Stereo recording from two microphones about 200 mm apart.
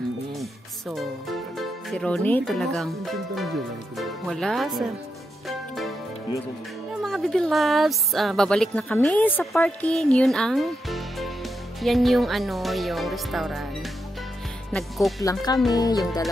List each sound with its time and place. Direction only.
0.4 s music: centre (ahead or behind)
3.9 s speech: centre (ahead or behind)
7.0 s a woman's voice: centre (ahead or behind)
14.7 s speech: centre (ahead or behind)
15.2 s speech: 20° left (ahead or behind)